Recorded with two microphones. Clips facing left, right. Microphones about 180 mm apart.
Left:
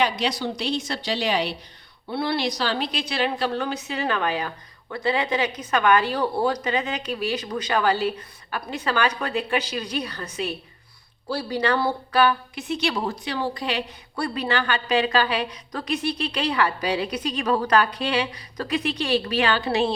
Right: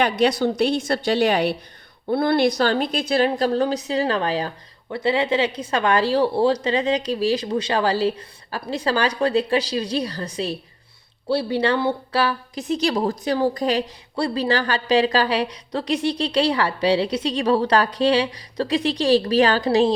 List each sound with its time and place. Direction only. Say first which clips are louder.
0.0 s a woman's voice: right 5 dB; 55° right (ahead or behind)
14.2 s a woman's voice: right 4 dB; 30° right (ahead or behind)